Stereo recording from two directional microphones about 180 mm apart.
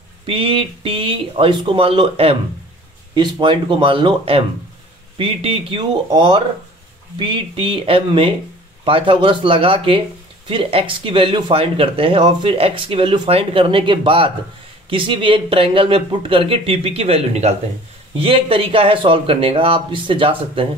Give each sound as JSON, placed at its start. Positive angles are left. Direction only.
{"t": 0.3, "sound": "speech", "side_deg": -30}